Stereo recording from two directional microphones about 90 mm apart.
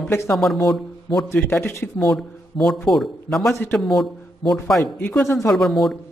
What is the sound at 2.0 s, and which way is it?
A man's voice, 5° left (ahead or behind).